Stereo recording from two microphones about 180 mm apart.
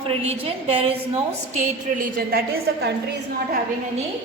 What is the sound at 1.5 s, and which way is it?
A woman's voice, 45° right (ahead or behind).